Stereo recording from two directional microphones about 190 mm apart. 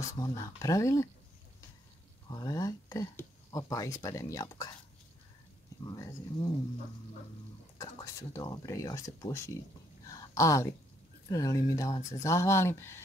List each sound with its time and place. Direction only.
0.2 s speech: 20° left (ahead or behind)
2.2 s speech: 20° left (ahead or behind)
5.9 s speech: 20° left (ahead or behind)
7.8 s speech: 15° left (ahead or behind)
10.0 s a sound: 15° left (ahead or behind)
11.2 s speech: 20° left (ahead or behind)